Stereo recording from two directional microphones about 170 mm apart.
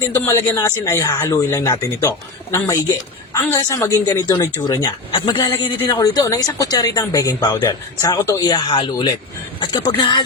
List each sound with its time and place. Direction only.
0.3 s speech: 15° left (ahead or behind)